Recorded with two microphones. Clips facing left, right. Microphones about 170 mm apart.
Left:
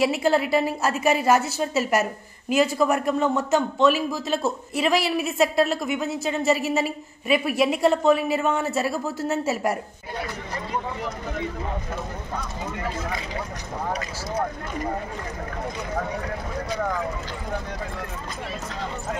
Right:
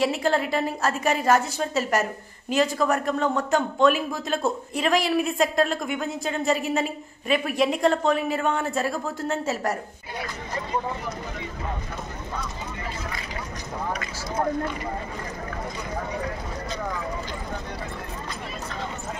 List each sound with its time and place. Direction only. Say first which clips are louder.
0.0 s a woman's voice: left 2 dB; 5° left (ahead or behind)
13.9 s speech: left 1 dB; 35° left (ahead or behind)